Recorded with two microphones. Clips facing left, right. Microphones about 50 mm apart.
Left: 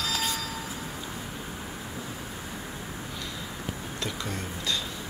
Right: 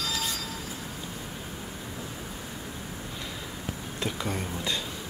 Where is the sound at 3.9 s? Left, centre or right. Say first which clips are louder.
Right 4 dB; centre.